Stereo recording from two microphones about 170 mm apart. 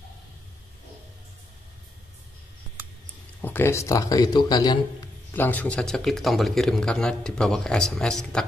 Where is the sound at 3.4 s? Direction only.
15° left (ahead or behind).